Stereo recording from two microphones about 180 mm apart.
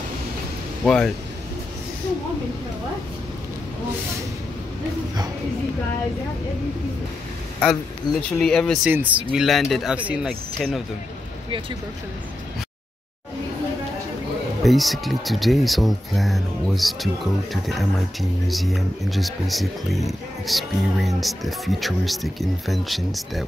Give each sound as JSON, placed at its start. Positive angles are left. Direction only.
{"t": 0.8, "sound": "speech", "side_deg": 5}
{"t": 7.6, "sound": "speech", "side_deg": 0}
{"t": 8.8, "sound": "speech", "side_deg": -10}
{"t": 14.6, "sound": "speech", "side_deg": 0}